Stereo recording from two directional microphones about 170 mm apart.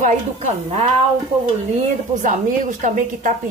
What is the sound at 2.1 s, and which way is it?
Speech, 50° right (ahead or behind).